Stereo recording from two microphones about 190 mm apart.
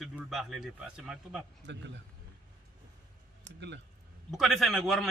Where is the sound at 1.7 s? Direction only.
70° right (ahead or behind).